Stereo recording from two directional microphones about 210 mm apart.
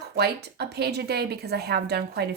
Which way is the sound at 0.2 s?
50° right (ahead or behind).